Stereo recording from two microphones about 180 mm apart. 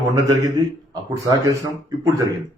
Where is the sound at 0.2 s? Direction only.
20° right (ahead or behind).